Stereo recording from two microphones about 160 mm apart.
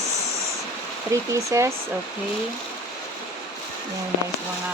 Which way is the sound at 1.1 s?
20° right (ahead or behind).